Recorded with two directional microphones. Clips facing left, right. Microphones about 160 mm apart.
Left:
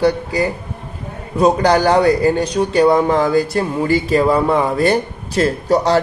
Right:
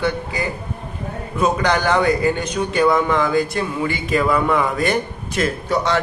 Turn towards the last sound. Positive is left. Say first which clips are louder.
# left 5 dB
turn(degrees=35)  # may be behind; listen again after turning